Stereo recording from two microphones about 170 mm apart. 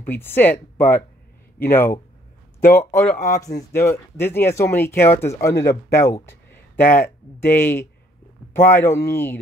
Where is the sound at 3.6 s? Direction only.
15° left (ahead or behind).